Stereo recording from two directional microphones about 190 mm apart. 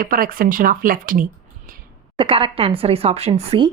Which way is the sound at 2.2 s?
30° right (ahead or behind).